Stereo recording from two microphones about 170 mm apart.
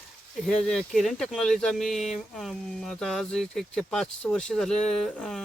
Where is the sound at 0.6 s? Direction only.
5° left (ahead or behind).